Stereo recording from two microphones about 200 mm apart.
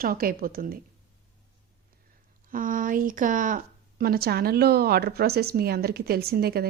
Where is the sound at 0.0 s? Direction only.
45° right (ahead or behind).